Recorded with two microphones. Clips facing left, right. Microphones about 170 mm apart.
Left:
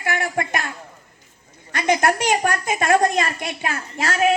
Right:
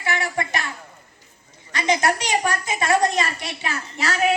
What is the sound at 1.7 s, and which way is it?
A woman's voice, 55° left (ahead or behind).